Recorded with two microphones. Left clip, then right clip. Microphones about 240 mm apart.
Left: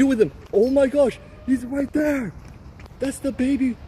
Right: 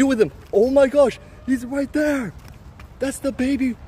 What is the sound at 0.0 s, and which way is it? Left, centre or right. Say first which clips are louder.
A man's voice: right 1 dB; right.